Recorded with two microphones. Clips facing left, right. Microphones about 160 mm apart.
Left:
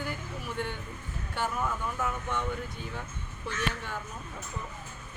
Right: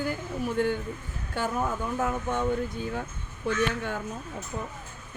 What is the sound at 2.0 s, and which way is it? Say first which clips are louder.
A woman's voice: right 7 dB; 45° right (ahead or behind).